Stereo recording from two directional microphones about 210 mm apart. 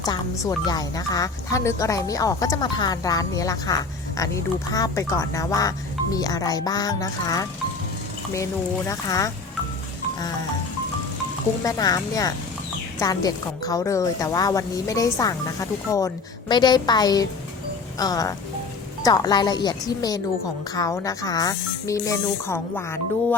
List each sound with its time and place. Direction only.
0.0 s speech: 20° left (ahead or behind)
8.9 s speech: 15° left (ahead or behind)
11.6 s speech: 15° left (ahead or behind)